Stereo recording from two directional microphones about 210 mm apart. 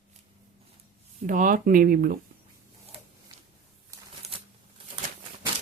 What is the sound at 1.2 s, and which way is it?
Speech, 40° right (ahead or behind).